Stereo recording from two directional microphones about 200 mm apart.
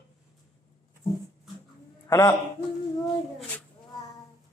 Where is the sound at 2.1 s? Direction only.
20° left (ahead or behind).